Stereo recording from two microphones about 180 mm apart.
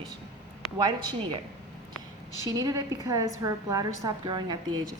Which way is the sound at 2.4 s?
20° right (ahead or behind).